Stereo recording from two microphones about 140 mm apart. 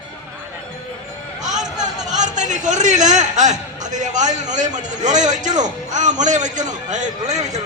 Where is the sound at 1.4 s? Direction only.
60° right (ahead or behind).